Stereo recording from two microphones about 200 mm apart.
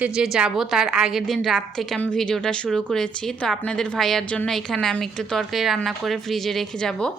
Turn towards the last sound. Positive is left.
turn(degrees=5)  # may be behind; listen again after turning